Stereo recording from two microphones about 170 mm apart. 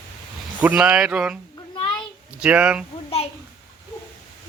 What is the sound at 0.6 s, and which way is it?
Speech, 5° right (ahead or behind).